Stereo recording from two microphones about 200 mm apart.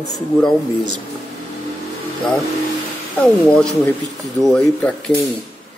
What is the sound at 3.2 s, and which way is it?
Speech, 5° left (ahead or behind).